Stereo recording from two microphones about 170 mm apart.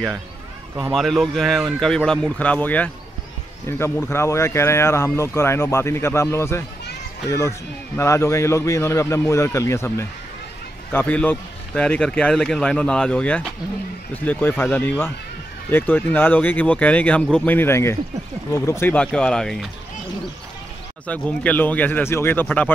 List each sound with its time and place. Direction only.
0.7 s a man's voice: 5° right (ahead or behind)
21.1 s speech: 10° left (ahead or behind)